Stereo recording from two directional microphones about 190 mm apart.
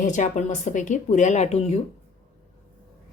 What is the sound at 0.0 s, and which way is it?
Speech, 40° left (ahead or behind).